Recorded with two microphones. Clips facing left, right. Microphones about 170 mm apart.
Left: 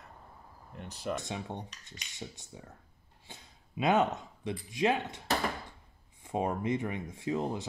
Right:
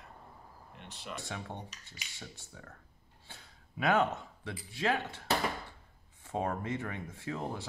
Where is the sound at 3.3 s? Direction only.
20° left (ahead or behind).